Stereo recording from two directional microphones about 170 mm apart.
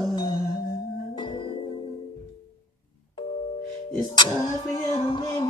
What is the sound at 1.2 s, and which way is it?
Music, 30° left (ahead or behind).